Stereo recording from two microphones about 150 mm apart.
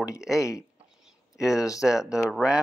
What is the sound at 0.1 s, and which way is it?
Speech, 20° left (ahead or behind).